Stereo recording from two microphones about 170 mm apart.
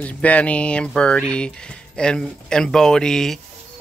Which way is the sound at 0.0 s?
10° left (ahead or behind).